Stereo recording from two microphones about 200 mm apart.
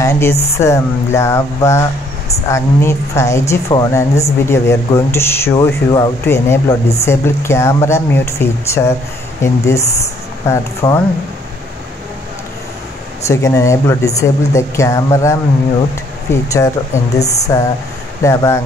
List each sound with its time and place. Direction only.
0.0 s speech: 15° left (ahead or behind)
13.3 s speech: 15° left (ahead or behind)